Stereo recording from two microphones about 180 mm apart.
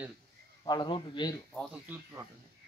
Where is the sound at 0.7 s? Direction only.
25° left (ahead or behind).